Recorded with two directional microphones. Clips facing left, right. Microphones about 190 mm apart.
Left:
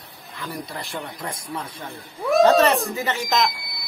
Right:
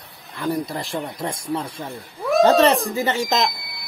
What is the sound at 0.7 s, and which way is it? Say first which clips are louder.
Speech: right 5 dB; 30° right (ahead or behind).